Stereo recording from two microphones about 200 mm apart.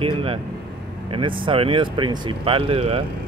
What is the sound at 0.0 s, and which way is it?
Air conditioning, 25° right (ahead or behind).